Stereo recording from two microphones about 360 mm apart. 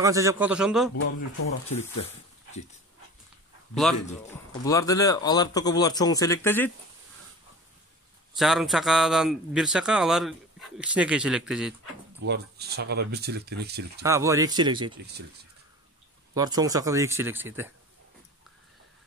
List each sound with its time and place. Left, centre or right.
0.0 s a man's voice: centre
3.7 s speech: centre
8.4 s a man's voice: centre
12.2 s speech: right
14.0 s speech: centre
16.3 s speech: centre